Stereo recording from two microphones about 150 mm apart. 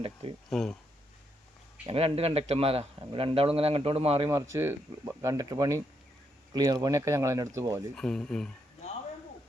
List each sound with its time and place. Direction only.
0.0 s speech: 40° right (ahead or behind)
0.5 s speech: 5° left (ahead or behind)
1.9 s speech: 40° right (ahead or behind)
4.3 s speech: 20° right (ahead or behind)
7.9 s speech: 5° left (ahead or behind)